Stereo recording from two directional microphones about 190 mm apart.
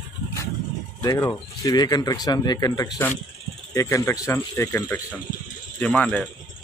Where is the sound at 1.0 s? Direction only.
20° left (ahead or behind).